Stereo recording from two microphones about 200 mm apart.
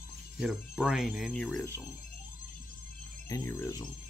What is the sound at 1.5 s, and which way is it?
Speech, 10° left (ahead or behind).